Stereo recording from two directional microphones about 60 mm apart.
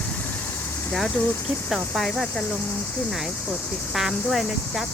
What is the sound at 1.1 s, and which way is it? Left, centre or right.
Cricket, left.